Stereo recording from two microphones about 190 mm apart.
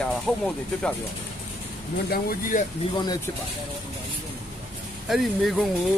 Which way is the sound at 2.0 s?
55° left (ahead or behind).